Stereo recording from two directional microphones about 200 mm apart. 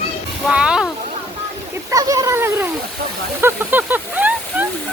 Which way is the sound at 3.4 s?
10° right (ahead or behind).